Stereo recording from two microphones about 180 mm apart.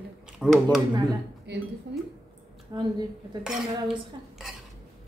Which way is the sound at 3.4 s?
Centre (ahead or behind).